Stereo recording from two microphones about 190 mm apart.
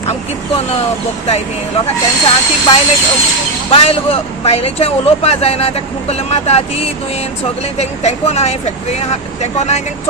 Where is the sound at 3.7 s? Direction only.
30° left (ahead or behind).